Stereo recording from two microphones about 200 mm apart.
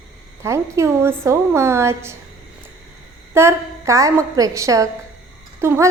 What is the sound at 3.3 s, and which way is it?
A woman's voice, 15° right (ahead or behind).